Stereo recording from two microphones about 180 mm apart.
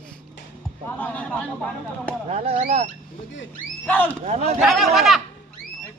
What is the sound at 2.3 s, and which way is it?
Speech, 35° right (ahead or behind).